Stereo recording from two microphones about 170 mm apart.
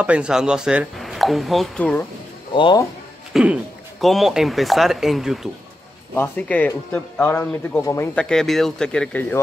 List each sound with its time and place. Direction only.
0.0 s speech: 5° right (ahead or behind); by 2.0 s 10° left (ahead or behind)
2.5 s speech: 30° left (ahead or behind)
3.3 s speech: centre (ahead or behind)
6.1 s speech: 10° left (ahead or behind)